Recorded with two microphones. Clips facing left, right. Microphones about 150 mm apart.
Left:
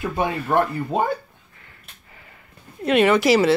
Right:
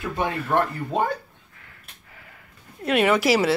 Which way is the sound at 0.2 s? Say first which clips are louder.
Left 2 dB; 5° left (ahead or behind).